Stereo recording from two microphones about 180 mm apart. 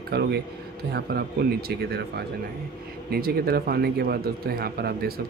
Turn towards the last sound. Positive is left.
turn(degrees=-60)  # may be behind; listen again after turning